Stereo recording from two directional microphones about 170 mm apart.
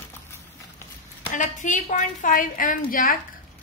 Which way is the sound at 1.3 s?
50° left (ahead or behind).